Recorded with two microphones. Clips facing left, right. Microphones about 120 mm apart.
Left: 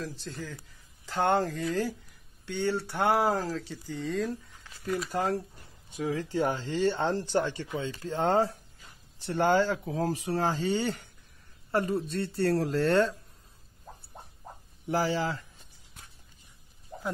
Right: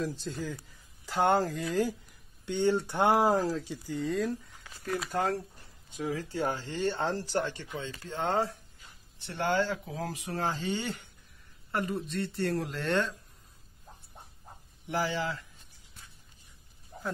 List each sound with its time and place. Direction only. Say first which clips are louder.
0.0 s speech: right 4 dB; 15° right (ahead or behind)
4.1 s speech: left 2 dB; 5° right (ahead or behind)
6.0 s speech: left 3 dB; 25° left (ahead or behind)
7.2 s speech: left 3 dB; centre (ahead or behind)
7.7 s speech: left 5 dB; 20° left (ahead or behind)
8.1 s speech: left 4 dB; 40° left (ahead or behind)
14.9 s speech: left 3 dB; 35° left (ahead or behind)